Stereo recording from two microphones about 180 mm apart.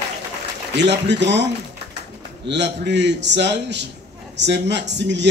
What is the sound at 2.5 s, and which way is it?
A man's voice, 75° right (ahead or behind).